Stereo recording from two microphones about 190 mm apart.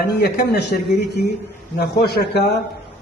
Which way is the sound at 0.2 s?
60° left (ahead or behind).